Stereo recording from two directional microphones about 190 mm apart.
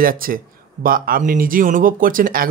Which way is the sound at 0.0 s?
50° right (ahead or behind).